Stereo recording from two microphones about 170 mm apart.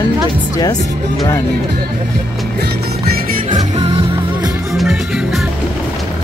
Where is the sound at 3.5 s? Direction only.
30° right (ahead or behind).